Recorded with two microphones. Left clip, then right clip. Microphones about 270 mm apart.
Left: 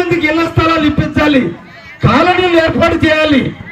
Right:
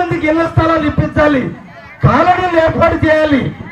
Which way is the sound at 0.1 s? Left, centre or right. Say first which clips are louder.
Left 1 dB; right.